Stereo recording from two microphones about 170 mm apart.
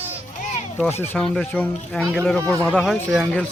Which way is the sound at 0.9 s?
10° left (ahead or behind).